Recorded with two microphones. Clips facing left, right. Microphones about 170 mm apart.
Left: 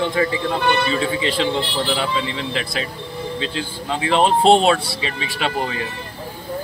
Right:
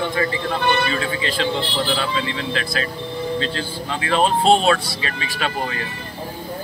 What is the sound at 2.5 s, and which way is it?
Speech, 20° left (ahead or behind).